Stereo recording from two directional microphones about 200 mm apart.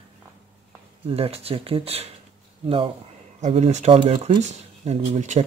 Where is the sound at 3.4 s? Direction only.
35° right (ahead or behind).